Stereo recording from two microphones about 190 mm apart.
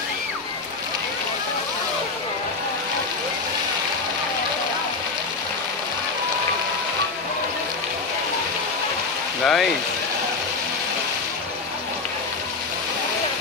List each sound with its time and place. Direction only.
9.4 s speech: 5° left (ahead or behind)